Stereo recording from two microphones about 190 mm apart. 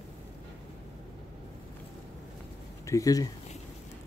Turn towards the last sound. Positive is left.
turn(degrees=20)  # may be behind; listen again after turning